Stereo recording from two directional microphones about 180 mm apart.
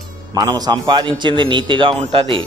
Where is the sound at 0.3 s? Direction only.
20° right (ahead or behind).